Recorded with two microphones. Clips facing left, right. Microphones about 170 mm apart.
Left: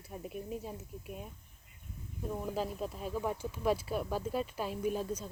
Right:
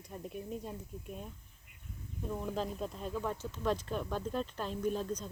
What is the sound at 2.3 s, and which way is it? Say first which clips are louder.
Speech: left 1 dB; 5° left (ahead or behind).